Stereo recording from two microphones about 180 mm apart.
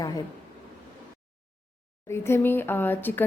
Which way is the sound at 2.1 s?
15° left (ahead or behind).